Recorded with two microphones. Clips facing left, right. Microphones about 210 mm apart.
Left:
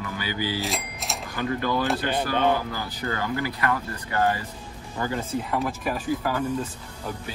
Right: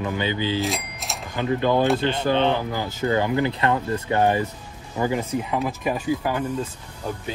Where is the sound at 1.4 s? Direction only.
20° right (ahead or behind).